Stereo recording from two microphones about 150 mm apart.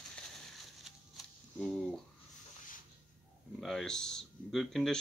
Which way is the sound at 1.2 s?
Centre (ahead or behind).